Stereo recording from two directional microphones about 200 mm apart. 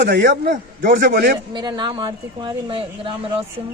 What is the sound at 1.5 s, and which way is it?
A man's voice, 20° right (ahead or behind).